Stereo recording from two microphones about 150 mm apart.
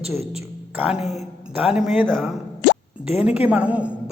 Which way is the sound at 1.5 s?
5° right (ahead or behind).